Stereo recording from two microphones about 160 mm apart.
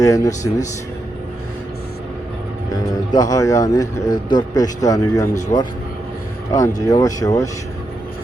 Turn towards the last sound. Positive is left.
turn(degrees=20)  # may be behind; listen again after turning